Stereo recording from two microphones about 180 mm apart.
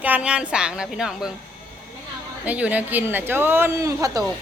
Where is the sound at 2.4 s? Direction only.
10° right (ahead or behind).